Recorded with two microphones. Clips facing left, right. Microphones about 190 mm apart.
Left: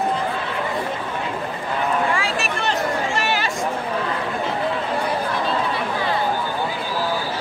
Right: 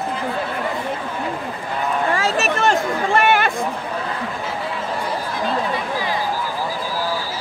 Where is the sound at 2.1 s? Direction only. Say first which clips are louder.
Right 4 dB; 40° right (ahead or behind); by 3.5 s 55° right (ahead or behind).